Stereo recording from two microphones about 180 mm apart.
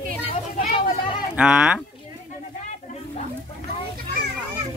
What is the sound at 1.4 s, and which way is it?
Speech, 5° right (ahead or behind).